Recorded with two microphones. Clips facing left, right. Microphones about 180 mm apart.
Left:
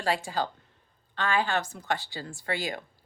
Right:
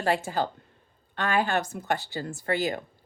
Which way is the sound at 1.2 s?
55° right (ahead or behind).